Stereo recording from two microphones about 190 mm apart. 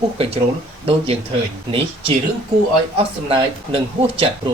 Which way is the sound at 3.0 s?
30° right (ahead or behind).